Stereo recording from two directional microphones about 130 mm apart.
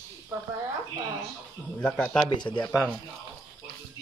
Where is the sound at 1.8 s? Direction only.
5° left (ahead or behind).